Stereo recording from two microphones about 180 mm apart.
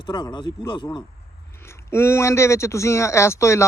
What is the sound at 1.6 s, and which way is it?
A man's voice, 15° left (ahead or behind).